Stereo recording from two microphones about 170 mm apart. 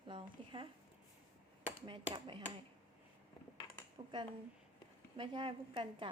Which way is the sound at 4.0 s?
35° right (ahead or behind).